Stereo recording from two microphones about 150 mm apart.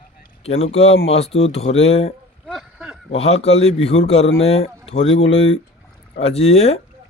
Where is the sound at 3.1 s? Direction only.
45° left (ahead or behind).